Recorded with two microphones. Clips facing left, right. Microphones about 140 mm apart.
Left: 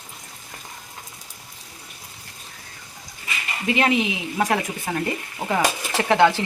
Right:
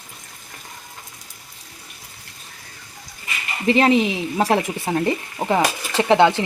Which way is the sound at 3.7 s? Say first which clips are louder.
Right 5 dB; 35° right (ahead or behind).